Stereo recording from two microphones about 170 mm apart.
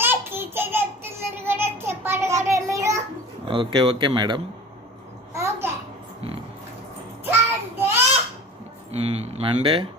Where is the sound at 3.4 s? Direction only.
30° right (ahead or behind).